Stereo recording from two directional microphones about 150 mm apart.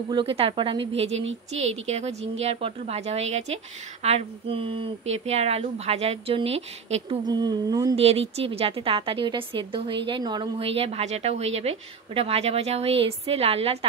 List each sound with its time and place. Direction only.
0.1 s a woman's voice: 40° right (ahead or behind)
7.2 s speech: 25° right (ahead or behind)
7.9 s a woman's voice: 40° right (ahead or behind)